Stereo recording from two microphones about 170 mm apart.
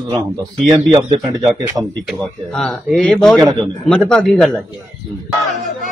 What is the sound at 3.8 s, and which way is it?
Speech, 5° left (ahead or behind).